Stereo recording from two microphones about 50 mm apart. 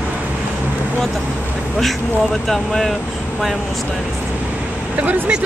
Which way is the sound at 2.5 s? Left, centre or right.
Centre.